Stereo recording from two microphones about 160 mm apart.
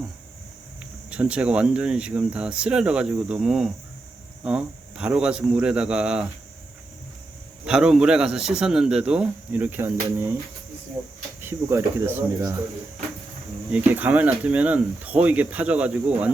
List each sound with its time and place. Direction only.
0.8 s a man's voice: 5° right (ahead or behind)
7.6 s a man's voice: 5° right (ahead or behind)
11.4 s speech: 15° right (ahead or behind)
13.7 s speech: 10° right (ahead or behind)